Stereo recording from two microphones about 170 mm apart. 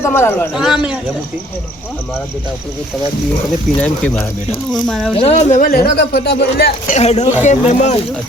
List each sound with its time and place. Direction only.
0.0 s speech: 15° left (ahead or behind)
0.5 s speech: 5° right (ahead or behind)
3.8 s speech: 10° left (ahead or behind)
5.1 s speech: 35° left (ahead or behind)
5.7 s speech: 65° left (ahead or behind)
6.9 s speech: 40° left (ahead or behind)